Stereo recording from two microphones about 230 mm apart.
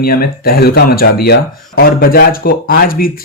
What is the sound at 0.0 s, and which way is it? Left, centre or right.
Speech, left.